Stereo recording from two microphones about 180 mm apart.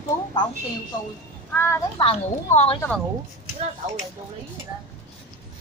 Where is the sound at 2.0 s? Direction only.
30° left (ahead or behind).